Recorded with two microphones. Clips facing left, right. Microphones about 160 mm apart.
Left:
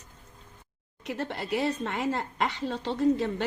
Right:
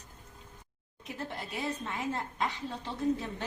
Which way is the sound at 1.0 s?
75° left (ahead or behind).